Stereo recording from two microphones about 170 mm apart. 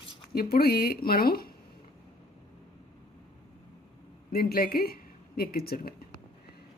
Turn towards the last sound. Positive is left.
turn(degrees=60)  # may be behind; listen again after turning